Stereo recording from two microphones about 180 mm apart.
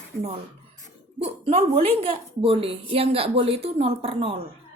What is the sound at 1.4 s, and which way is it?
A woman's voice, 30° right (ahead or behind).